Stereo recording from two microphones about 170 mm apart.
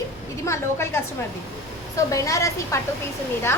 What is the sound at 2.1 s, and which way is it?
A woman's voice, 20° left (ahead or behind).